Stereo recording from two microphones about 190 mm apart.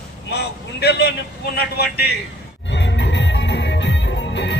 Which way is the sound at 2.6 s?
70° left (ahead or behind).